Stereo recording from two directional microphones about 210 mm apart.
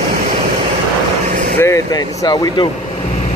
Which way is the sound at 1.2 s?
35° right (ahead or behind).